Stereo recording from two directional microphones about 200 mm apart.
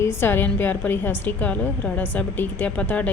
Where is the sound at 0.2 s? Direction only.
10° left (ahead or behind).